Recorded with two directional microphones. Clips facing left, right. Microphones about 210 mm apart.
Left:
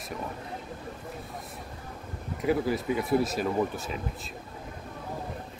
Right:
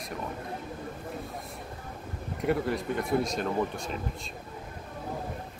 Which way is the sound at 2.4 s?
Centre (ahead or behind).